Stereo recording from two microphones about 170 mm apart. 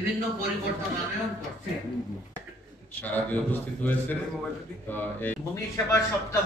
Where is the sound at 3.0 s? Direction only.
10° left (ahead or behind).